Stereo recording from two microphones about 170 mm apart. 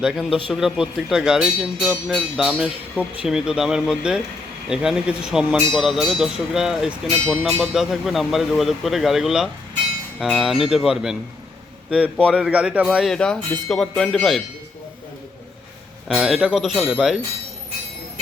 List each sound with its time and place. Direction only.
0.0 s a man's voice: 5° right (ahead or behind)
16.0 s speech: centre (ahead or behind)